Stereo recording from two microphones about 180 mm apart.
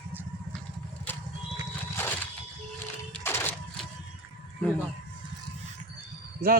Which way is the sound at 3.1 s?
10° left (ahead or behind).